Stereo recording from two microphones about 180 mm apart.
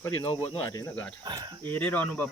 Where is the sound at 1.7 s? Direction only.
10° left (ahead or behind).